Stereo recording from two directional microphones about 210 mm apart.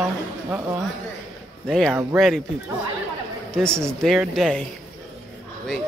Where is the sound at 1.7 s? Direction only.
Centre (ahead or behind).